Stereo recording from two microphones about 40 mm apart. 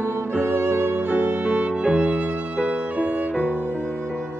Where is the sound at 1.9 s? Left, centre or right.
Centre.